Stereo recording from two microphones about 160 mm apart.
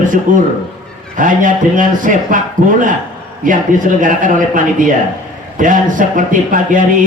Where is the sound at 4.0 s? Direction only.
55° right (ahead or behind).